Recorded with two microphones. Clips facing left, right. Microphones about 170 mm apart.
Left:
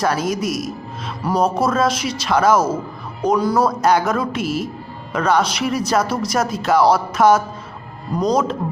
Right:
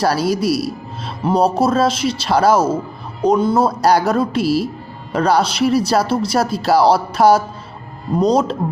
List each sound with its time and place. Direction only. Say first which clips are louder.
0.0 s speech: right 3 dB; 35° right (ahead or behind)